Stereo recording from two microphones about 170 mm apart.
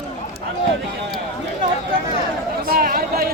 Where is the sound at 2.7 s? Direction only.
60° right (ahead or behind).